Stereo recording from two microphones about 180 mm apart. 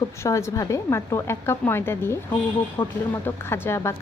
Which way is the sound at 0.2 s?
15° left (ahead or behind).